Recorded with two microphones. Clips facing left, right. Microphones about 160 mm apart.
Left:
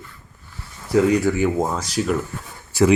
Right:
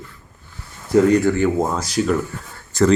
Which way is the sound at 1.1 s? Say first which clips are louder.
Right 2 dB; 5° left (ahead or behind).